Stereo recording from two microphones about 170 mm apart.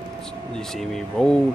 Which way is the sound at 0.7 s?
Centre (ahead or behind).